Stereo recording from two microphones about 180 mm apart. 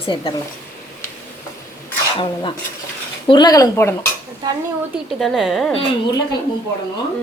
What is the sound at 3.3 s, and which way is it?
Speech, 25° left (ahead or behind).